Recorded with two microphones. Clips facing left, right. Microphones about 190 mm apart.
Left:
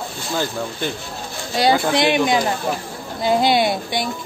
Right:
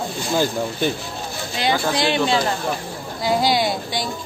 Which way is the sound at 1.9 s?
20° left (ahead or behind).